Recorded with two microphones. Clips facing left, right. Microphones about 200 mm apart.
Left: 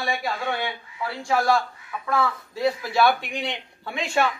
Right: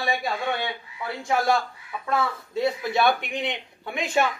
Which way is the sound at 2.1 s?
20° right (ahead or behind).